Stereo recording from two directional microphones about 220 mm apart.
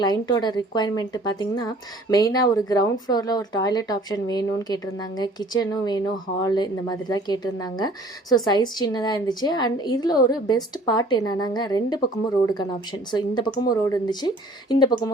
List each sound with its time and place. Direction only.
0.0 s a woman's voice: 20° left (ahead or behind)
13.1 s a woman's voice: 20° left (ahead or behind)